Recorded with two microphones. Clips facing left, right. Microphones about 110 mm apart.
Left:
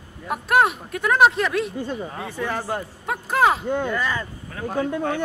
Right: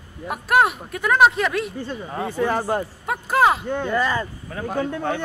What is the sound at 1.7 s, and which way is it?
Speech, 15° left (ahead or behind).